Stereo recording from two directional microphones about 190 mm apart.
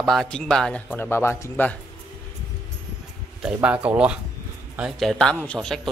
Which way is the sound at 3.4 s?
5° right (ahead or behind).